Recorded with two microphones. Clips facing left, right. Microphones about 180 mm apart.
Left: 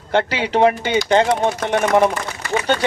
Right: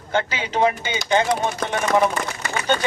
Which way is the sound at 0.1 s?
70° left (ahead or behind).